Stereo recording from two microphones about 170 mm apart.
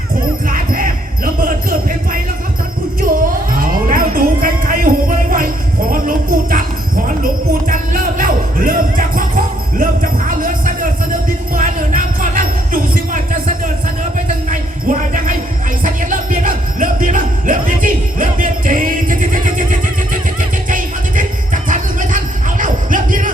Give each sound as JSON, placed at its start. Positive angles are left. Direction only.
{"t": 0.4, "sound": "jingle bell", "side_deg": -55}
{"t": 3.0, "sound": "music", "side_deg": -55}
{"t": 5.9, "sound": "jingle bell", "side_deg": -55}
{"t": 7.7, "sound": "a sound", "side_deg": -55}
{"t": 11.5, "sound": "jingle bell", "side_deg": -50}
{"t": 14.5, "sound": "jingle bell", "side_deg": -50}
{"t": 20.7, "sound": "music", "side_deg": -50}